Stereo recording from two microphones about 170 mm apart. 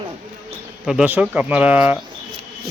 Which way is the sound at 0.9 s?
5° right (ahead or behind).